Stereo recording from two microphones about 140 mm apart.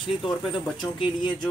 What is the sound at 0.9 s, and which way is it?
Speech, 35° left (ahead or behind).